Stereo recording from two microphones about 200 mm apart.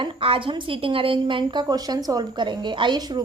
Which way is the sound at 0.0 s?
25° right (ahead or behind).